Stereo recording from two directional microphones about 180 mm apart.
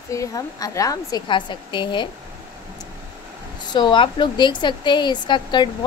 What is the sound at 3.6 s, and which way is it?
A woman's voice, 25° left (ahead or behind).